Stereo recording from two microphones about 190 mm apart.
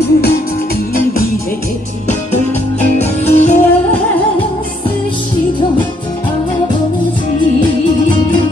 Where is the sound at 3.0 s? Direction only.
35° left (ahead or behind).